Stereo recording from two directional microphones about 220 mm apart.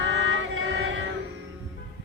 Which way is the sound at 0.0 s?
60° right (ahead or behind).